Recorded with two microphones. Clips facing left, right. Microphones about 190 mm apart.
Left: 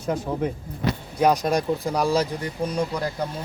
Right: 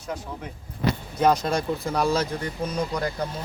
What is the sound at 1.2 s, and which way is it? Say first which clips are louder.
Speech: left 1 dB; 15° left (ahead or behind).